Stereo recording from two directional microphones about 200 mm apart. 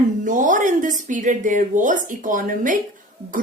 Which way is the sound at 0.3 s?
40° right (ahead or behind).